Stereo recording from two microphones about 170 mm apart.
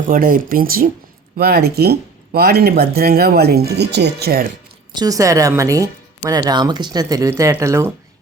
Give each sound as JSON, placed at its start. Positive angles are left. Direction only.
{"t": 0.1, "sound": "speech", "side_deg": -55}
{"t": 4.9, "sound": "speech", "side_deg": -20}